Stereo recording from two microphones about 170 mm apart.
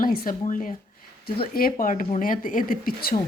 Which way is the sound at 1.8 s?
50° left (ahead or behind).